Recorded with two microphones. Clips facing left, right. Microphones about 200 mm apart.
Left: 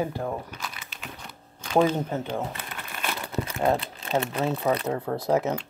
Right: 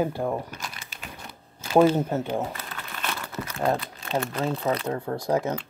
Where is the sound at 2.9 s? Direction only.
10° left (ahead or behind).